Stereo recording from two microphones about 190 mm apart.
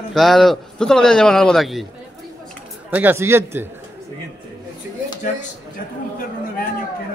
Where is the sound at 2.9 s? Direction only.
10° right (ahead or behind).